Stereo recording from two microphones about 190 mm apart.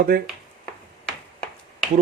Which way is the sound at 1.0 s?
5° left (ahead or behind).